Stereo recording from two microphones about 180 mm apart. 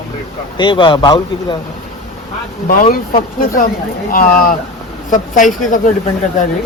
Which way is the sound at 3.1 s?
50° left (ahead or behind).